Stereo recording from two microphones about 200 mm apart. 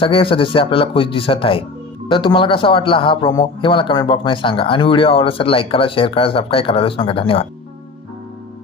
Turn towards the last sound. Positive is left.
turn(degrees=25)  # may be behind; listen again after turning